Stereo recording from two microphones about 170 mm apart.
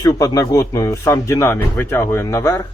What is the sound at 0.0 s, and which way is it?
Speech, 20° left (ahead or behind).